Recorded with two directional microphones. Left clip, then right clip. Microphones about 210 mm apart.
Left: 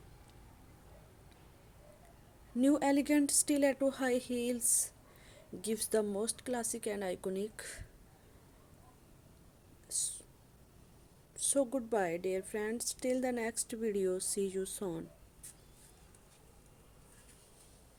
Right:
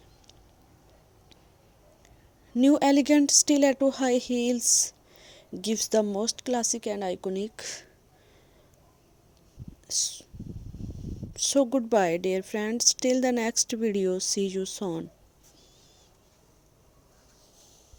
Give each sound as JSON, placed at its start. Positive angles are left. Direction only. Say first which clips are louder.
{"t": 2.6, "sound": "speech", "louder": "right 9 dB", "side_deg": -35}
{"t": 9.9, "sound": "speech", "louder": "right 12 dB", "side_deg": -35}
{"t": 11.3, "sound": "speech", "louder": "right 9 dB", "side_deg": -35}